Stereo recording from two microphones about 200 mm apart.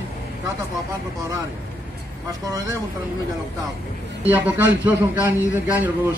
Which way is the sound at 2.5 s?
15° right (ahead or behind).